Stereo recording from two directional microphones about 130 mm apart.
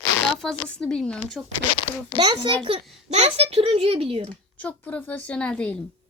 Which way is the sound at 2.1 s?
35° right (ahead or behind).